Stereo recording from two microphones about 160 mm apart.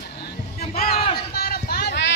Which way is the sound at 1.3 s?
70° left (ahead or behind).